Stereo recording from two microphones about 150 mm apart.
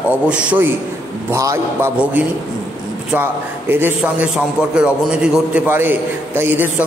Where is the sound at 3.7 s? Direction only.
10° right (ahead or behind).